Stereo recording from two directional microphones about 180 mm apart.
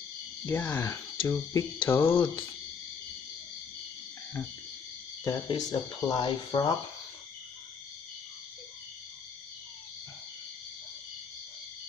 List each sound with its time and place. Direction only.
0.5 s speech: 15° left (ahead or behind)
5.2 s speech: 20° left (ahead or behind)